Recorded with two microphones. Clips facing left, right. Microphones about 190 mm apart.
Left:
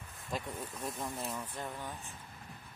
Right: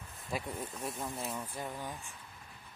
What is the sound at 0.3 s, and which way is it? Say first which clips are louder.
Speech: right 1 dB; 10° right (ahead or behind).